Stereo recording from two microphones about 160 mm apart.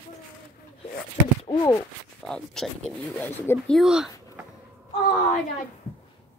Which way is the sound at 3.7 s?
Centre (ahead or behind).